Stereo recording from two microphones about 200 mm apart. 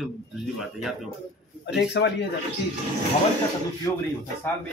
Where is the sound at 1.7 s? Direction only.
60° left (ahead or behind).